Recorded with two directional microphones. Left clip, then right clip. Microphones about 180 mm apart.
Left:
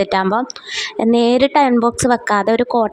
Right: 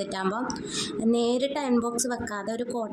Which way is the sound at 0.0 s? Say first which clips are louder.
Left 13 dB; 45° left (ahead or behind).